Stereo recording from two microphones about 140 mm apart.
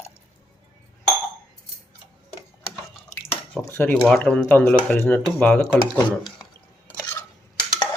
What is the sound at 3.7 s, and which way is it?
Speech, 15° left (ahead or behind).